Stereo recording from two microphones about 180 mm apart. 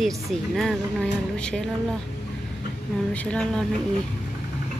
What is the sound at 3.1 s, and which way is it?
Speech, 5° left (ahead or behind).